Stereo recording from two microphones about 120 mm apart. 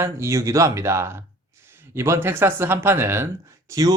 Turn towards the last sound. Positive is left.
turn(degrees=-25)  # may be behind; listen again after turning